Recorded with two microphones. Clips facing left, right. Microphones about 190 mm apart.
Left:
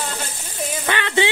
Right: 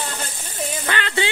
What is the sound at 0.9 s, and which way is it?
Speech, 20° left (ahead or behind).